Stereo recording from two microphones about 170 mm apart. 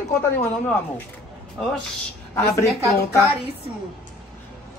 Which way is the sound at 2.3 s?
15° left (ahead or behind).